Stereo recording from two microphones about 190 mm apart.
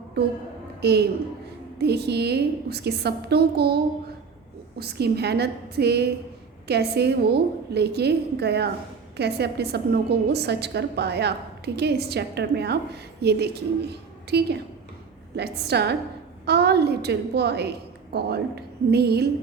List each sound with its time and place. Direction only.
0.8 s a woman's voice: 60° right (ahead or behind)
4.8 s a woman's voice: 55° right (ahead or behind)